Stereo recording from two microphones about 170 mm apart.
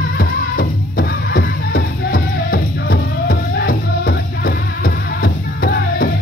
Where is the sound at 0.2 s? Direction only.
60° left (ahead or behind).